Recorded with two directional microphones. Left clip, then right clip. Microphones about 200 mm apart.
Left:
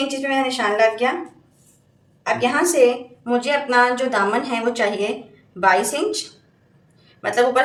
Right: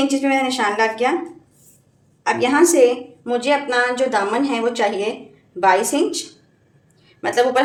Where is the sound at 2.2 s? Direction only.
50° right (ahead or behind).